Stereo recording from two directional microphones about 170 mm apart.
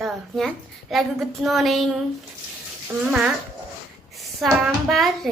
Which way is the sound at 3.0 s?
5° right (ahead or behind).